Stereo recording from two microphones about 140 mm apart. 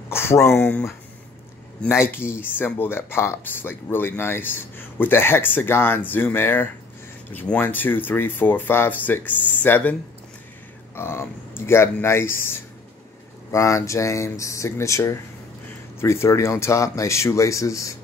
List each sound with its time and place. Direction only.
0.1 s speech: 15° left (ahead or behind)
1.8 s speech: 15° left (ahead or behind)
11.0 s speech: 15° left (ahead or behind)